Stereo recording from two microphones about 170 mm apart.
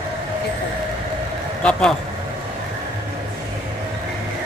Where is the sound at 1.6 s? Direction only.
5° left (ahead or behind).